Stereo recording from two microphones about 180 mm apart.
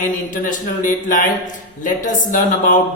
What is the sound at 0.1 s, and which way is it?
A man's voice, 45° left (ahead or behind).